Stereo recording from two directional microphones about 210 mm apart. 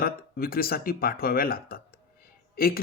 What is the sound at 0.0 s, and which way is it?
Speech, 45° left (ahead or behind).